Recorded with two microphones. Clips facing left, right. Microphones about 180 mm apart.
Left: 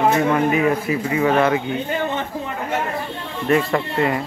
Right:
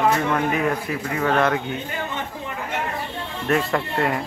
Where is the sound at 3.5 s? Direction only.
Centre (ahead or behind).